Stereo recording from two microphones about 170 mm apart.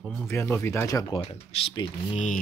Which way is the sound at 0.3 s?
15° left (ahead or behind).